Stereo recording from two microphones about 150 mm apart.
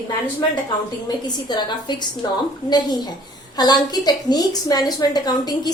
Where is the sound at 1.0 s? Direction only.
30° left (ahead or behind).